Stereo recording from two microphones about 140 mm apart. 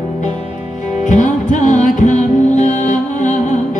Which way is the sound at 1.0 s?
60° left (ahead or behind).